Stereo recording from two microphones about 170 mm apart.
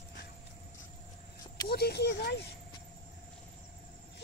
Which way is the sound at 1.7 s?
70° left (ahead or behind).